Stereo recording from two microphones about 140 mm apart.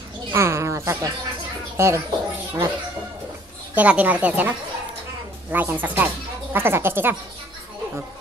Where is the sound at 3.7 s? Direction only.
10° right (ahead or behind).